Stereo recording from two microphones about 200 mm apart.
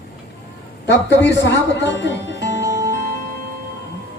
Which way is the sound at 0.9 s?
60° left (ahead or behind).